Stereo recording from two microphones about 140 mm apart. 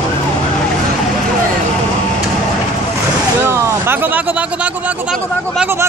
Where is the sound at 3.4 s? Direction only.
20° right (ahead or behind).